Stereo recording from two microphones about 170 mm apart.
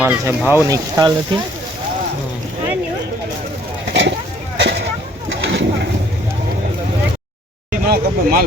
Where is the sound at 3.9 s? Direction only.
90° right.